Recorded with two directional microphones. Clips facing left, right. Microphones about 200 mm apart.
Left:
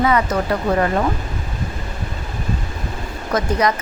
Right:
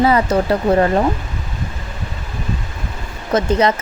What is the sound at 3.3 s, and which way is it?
Speech, 25° right (ahead or behind).